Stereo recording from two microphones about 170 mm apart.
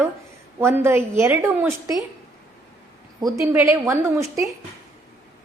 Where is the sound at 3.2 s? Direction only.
20° right (ahead or behind).